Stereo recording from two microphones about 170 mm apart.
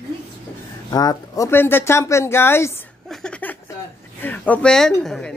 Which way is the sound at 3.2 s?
10° left (ahead or behind).